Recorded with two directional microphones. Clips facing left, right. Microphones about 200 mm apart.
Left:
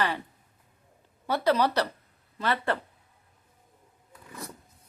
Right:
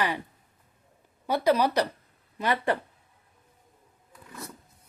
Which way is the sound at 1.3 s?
10° right (ahead or behind).